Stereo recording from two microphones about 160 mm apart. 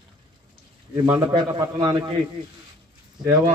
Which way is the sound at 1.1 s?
25° right (ahead or behind).